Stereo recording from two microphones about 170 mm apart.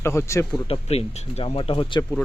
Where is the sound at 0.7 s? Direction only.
35° left (ahead or behind).